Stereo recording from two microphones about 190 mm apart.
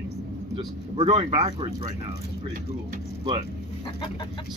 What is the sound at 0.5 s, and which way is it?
Speech, 25° right (ahead or behind).